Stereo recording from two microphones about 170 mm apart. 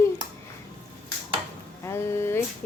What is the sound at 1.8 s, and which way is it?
Speech, 15° left (ahead or behind).